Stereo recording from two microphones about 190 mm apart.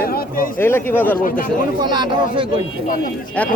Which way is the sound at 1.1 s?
45° left (ahead or behind).